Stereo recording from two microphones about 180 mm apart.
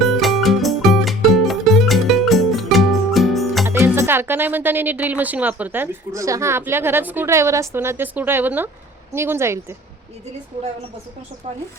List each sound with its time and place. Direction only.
0.0 s music: centre (ahead or behind)
3.7 s a woman's voice: 15° right (ahead or behind)
11.4 s speech: 35° right (ahead or behind)